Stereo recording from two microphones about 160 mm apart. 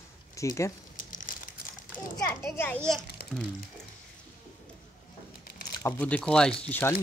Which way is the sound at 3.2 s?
75° left (ahead or behind).